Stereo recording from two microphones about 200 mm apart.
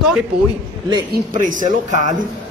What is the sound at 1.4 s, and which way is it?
Speech, 40° right (ahead or behind).